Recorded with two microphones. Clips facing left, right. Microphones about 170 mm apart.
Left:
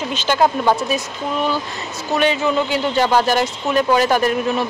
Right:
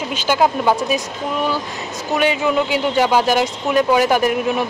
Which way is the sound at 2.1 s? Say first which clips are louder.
Even; 10° right (ahead or behind).